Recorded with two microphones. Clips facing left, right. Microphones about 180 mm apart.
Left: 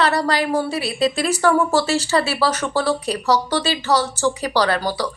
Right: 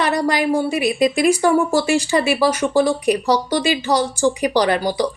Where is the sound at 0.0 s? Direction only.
15° right (ahead or behind).